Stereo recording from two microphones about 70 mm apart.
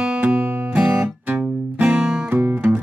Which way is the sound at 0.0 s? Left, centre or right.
Centre.